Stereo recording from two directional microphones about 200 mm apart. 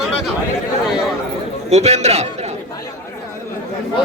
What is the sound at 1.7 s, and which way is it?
Speech, 35° right (ahead or behind).